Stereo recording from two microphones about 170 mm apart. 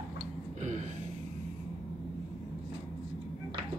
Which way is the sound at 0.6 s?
45° right (ahead or behind).